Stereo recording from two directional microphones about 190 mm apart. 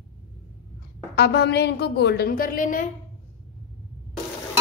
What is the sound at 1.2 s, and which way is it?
A woman's voice, 60° left (ahead or behind).